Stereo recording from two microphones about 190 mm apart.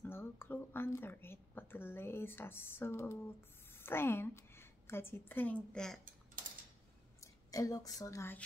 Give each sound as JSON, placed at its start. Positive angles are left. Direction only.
{"t": 0.0, "sound": "a woman's voice", "side_deg": 10}
{"t": 7.5, "sound": "a woman's voice", "side_deg": 20}